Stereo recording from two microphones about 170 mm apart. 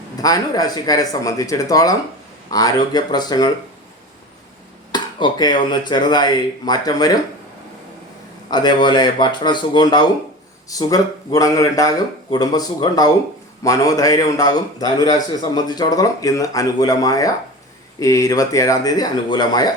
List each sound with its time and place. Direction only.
0.2 s a man's voice: 20° left (ahead or behind)
4.9 s a man's voice: 25° left (ahead or behind)
8.4 s a man's voice: 25° left (ahead or behind)